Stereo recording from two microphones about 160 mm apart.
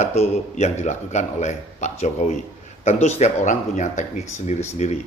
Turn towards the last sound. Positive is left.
turn(degrees=45)  # may be behind; listen again after turning